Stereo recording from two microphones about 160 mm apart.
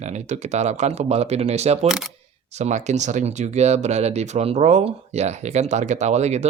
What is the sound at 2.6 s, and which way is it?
Speech, 45° right (ahead or behind).